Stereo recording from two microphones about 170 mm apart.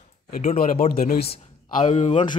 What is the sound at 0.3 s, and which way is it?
Speech, 50° left (ahead or behind).